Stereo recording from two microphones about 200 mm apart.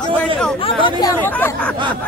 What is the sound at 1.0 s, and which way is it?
Speech, 10° left (ahead or behind).